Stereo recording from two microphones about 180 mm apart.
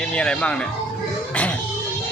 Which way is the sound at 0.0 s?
5° left (ahead or behind).